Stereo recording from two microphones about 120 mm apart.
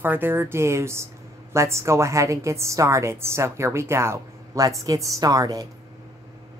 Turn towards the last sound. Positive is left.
turn(degrees=-30)  # may be behind; listen again after turning